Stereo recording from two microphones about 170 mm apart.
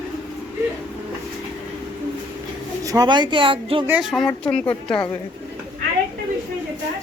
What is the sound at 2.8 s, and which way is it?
Speech, 20° right (ahead or behind).